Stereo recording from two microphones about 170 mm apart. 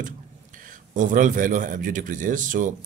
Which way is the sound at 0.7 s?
50° right (ahead or behind).